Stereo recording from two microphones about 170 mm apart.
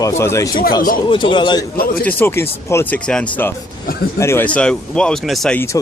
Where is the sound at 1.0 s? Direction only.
30° left (ahead or behind).